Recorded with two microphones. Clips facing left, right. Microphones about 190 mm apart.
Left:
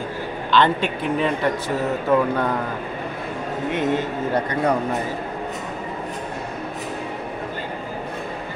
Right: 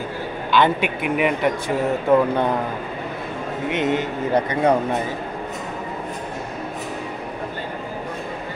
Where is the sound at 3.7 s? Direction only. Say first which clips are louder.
Right 1 dB; 20° right (ahead or behind).